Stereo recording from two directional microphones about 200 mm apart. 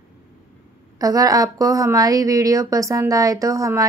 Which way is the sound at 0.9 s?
15° right (ahead or behind).